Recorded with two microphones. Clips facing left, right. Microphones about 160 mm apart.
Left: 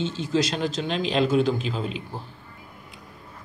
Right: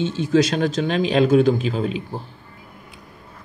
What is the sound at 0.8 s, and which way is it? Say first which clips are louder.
Speech: right 5 dB; 50° right (ahead or behind).